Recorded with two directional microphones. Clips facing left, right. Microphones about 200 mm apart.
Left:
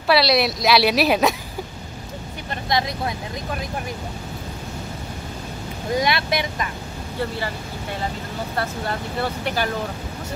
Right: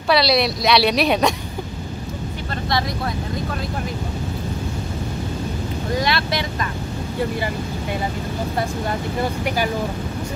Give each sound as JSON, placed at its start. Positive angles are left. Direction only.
{"t": 0.1, "sound": "a woman's voice", "side_deg": 0}
{"t": 5.9, "sound": "speech", "side_deg": 20}
{"t": 8.5, "sound": "speech", "side_deg": -15}